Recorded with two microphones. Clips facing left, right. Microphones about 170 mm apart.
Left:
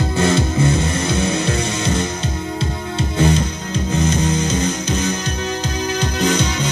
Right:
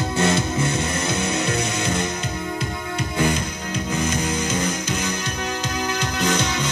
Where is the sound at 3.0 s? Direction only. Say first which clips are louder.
Left 5 dB; 25° left (ahead or behind).